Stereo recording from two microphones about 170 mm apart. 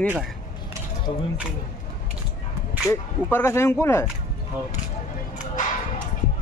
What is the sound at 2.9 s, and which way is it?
Speech, 15° left (ahead or behind).